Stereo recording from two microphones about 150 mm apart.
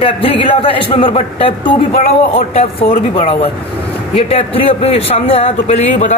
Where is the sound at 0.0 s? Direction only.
35° left (ahead or behind).